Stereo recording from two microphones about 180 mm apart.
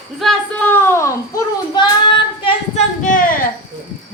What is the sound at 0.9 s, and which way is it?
A child's voice, 15° left (ahead or behind).